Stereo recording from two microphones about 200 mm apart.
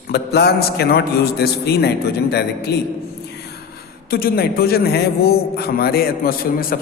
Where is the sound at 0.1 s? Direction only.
55° left (ahead or behind).